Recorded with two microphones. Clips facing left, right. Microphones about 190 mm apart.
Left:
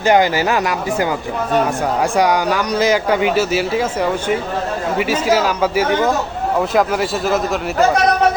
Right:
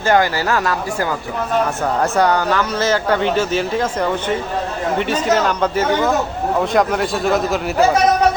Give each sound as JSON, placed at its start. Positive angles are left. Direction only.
{"t": 0.0, "sound": "a man's voice", "side_deg": 20}